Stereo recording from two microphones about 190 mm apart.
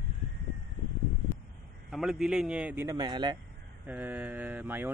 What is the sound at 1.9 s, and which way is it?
A man's voice, centre (ahead or behind).